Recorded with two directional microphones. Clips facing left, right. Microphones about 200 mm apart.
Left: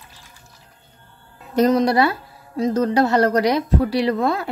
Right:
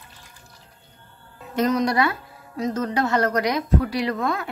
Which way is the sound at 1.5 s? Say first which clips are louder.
Left 5 dB; 35° left (ahead or behind).